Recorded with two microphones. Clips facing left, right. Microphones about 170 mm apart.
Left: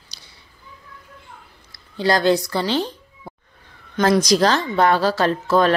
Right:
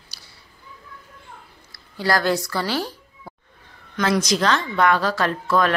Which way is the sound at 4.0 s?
35° left (ahead or behind).